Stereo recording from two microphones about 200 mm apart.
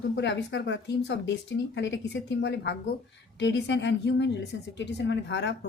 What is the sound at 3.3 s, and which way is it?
Speech, 60° left (ahead or behind).